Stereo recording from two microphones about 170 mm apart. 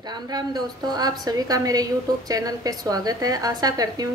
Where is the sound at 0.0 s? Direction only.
25° right (ahead or behind).